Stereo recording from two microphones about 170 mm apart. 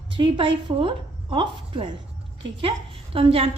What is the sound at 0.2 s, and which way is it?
A woman's voice, 30° right (ahead or behind).